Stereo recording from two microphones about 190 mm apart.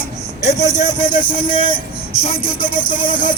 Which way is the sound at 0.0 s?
15° left (ahead or behind).